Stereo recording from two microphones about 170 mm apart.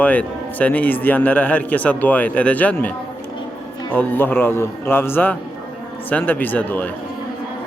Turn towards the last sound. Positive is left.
turn(degrees=10)  # may be behind; listen again after turning